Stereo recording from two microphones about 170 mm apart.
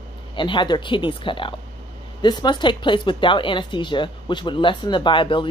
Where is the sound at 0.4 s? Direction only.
25° left (ahead or behind).